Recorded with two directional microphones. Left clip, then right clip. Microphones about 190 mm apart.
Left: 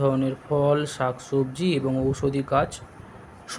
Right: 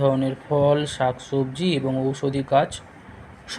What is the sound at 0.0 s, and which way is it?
Speech, 15° left (ahead or behind).